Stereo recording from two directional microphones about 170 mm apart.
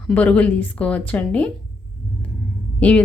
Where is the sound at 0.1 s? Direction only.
10° left (ahead or behind).